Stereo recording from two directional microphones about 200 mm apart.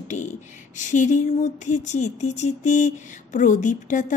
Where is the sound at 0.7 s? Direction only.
40° left (ahead or behind).